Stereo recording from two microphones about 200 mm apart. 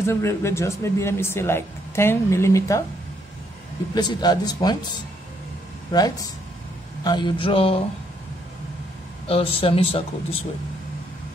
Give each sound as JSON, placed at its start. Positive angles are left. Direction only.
{"t": 0.0, "sound": "speech", "side_deg": 15}
{"t": 3.9, "sound": "speech", "side_deg": 20}
{"t": 9.3, "sound": "speech", "side_deg": 30}